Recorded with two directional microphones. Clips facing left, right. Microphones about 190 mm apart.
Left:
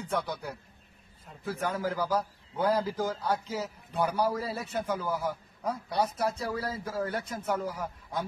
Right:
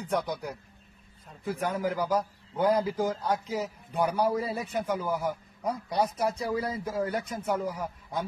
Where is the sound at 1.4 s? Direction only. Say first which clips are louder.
Right 2 dB; 10° right (ahead or behind).